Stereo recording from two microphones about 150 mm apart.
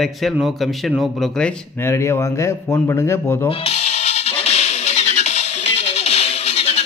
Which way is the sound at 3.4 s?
40° left (ahead or behind).